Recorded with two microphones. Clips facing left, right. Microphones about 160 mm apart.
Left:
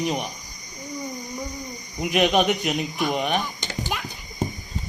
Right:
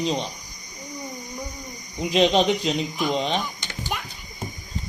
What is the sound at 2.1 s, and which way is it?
A man's voice, 25° right (ahead or behind).